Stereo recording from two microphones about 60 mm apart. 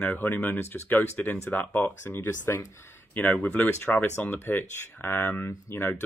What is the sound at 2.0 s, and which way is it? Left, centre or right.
Speech, left.